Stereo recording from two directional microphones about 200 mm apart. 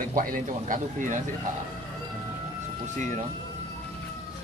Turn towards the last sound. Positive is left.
turn(degrees=-35)  # may be behind; listen again after turning